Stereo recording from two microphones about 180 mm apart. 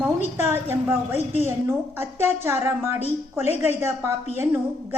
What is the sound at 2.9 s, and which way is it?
Speech, 35° left (ahead or behind).